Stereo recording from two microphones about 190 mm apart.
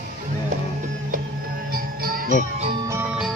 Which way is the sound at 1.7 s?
50° right (ahead or behind).